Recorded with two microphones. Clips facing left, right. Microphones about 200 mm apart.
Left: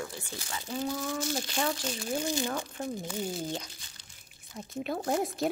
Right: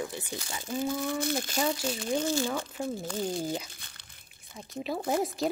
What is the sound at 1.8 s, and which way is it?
Speech, centre (ahead or behind).